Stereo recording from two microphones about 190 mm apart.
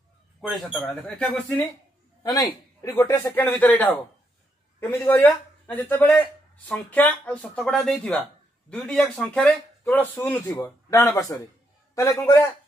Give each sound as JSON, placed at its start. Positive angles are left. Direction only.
{"t": 0.4, "sound": "speech", "side_deg": 0}
{"t": 2.2, "sound": "a man's voice", "side_deg": 20}